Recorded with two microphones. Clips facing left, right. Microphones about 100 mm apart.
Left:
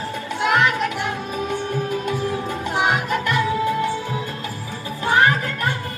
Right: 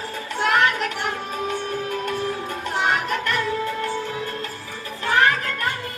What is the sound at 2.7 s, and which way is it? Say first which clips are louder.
Music: left 2 dB; 10° left (ahead or behind).